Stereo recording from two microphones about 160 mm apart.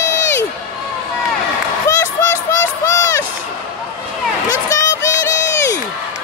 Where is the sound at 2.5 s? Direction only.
20° left (ahead or behind).